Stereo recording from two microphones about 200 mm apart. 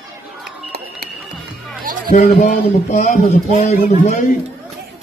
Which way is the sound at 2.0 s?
45° left (ahead or behind).